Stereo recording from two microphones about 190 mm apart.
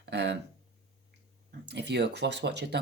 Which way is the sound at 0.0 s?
65° right (ahead or behind).